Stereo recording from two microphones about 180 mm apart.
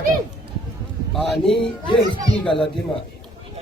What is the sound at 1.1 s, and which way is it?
Speech, centre (ahead or behind).